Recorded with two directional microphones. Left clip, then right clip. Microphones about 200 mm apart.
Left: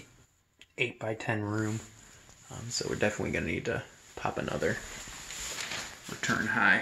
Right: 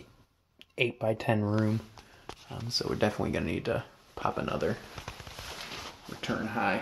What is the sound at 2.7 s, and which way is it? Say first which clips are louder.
Speech: right 1 dB; 25° right (ahead or behind).